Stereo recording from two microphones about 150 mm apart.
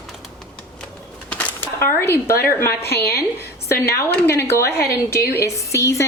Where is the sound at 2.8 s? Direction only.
90° left.